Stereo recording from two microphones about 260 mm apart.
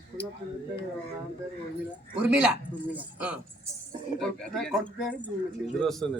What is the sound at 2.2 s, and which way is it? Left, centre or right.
A man's voice, centre.